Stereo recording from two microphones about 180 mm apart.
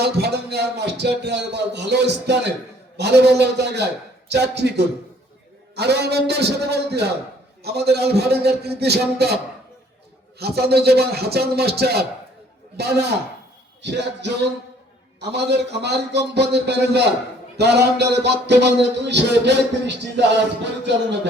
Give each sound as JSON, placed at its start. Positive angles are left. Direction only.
{"t": 0.0, "sound": "a man's voice", "side_deg": -65}